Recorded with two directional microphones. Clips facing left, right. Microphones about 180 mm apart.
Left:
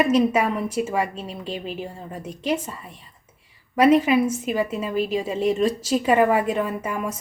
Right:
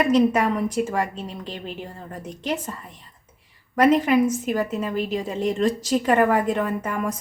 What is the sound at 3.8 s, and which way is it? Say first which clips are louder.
A woman's voice: left 1 dB; 5° left (ahead or behind).